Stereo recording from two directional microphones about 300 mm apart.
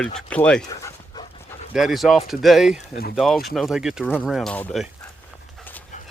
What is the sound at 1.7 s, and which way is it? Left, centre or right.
Speech, centre.